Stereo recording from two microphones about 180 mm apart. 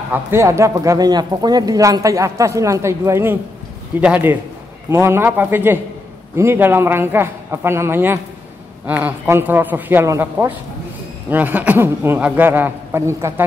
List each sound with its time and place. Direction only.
0.1 s speech: 15° right (ahead or behind)